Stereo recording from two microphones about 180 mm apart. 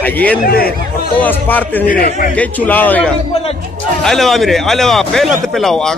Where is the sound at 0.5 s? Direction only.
55° left (ahead or behind).